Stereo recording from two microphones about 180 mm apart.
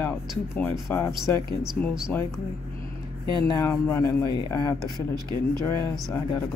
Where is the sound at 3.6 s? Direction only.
15° left (ahead or behind).